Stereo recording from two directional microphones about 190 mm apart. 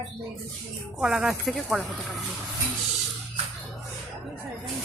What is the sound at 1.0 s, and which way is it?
Speech, 5° right (ahead or behind).